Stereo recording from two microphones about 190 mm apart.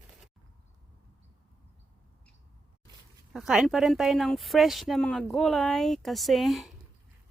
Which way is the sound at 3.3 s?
5° right (ahead or behind).